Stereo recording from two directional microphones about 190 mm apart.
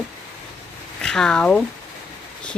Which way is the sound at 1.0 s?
5° left (ahead or behind).